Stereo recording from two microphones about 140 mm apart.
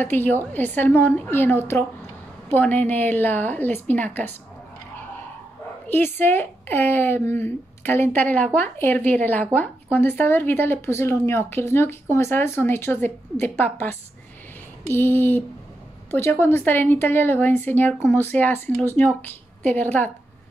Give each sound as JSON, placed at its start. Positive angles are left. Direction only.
{"t": 0.0, "sound": "speech", "side_deg": 15}
{"t": 5.9, "sound": "speech", "side_deg": 15}
{"t": 14.9, "sound": "speech", "side_deg": 15}